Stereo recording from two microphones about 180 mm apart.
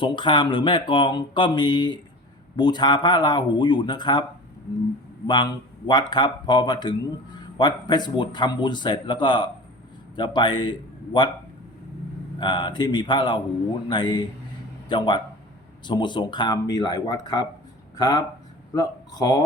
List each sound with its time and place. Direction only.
0.0 s speech: 25° left (ahead or behind)
5.2 s speech: 25° left (ahead or behind)
12.4 s speech: 25° left (ahead or behind)